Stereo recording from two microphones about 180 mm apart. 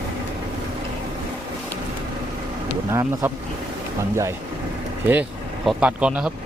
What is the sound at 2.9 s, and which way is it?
Speech, 15° right (ahead or behind).